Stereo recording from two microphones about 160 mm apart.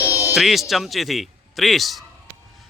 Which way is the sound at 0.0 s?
20° left (ahead or behind).